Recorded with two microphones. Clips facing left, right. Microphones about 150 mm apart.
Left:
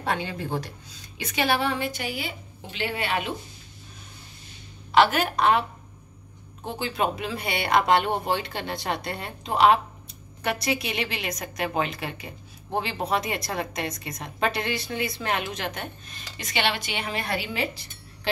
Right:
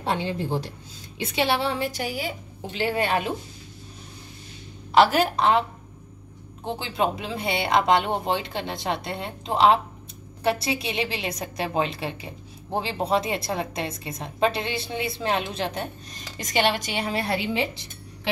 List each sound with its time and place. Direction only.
0.0 s a woman's voice: 25° right (ahead or behind)
4.9 s a woman's voice: 35° right (ahead or behind)
6.6 s a woman's voice: 25° right (ahead or behind)